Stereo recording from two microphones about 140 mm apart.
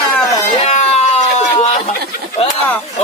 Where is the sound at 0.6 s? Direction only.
50° left (ahead or behind).